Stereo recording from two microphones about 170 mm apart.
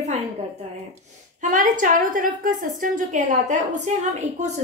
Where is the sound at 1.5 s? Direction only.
50° right (ahead or behind).